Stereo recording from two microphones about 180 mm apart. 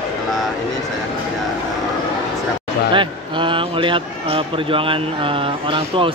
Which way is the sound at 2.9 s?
25° right (ahead or behind).